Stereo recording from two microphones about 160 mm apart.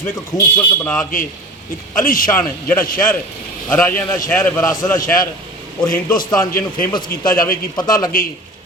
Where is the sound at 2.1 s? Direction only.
60° left (ahead or behind).